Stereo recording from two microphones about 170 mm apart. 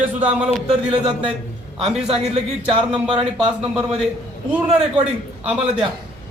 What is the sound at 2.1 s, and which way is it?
Speech, 35° right (ahead or behind).